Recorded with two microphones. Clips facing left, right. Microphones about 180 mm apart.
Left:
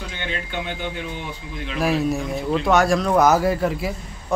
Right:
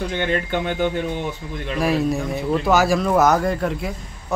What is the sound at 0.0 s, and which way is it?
Speech, 50° right (ahead or behind).